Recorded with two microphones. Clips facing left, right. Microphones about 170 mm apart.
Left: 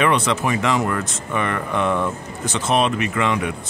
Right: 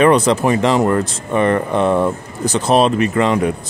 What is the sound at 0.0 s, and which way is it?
Speech, 40° right (ahead or behind).